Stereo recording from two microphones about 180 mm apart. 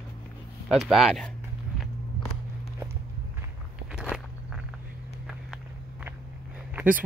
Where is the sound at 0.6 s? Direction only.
Centre (ahead or behind).